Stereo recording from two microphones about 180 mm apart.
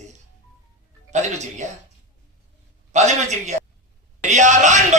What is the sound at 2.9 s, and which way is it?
A man's voice, 40° right (ahead or behind).